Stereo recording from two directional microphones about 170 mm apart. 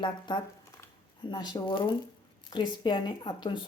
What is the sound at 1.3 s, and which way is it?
A woman's voice, 25° left (ahead or behind).